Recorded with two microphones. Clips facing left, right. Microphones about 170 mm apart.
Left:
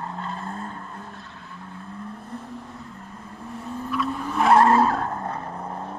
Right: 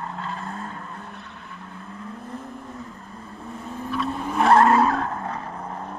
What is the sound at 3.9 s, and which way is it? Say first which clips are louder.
Vehicle: even; 25° right (ahead or behind).